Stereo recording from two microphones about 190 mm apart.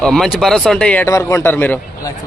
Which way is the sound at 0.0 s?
5° left (ahead or behind).